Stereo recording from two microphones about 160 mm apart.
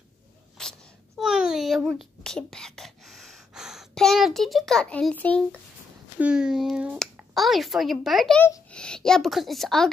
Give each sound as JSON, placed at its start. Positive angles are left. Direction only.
{"t": 0.6, "sound": "a sound", "side_deg": 0}
{"t": 6.1, "sound": "speech", "side_deg": -5}
{"t": 8.4, "sound": "speech", "side_deg": 20}
{"t": 8.6, "sound": "speech", "side_deg": 5}